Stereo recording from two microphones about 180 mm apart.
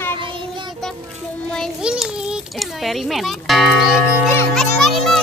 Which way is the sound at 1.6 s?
5° right (ahead or behind).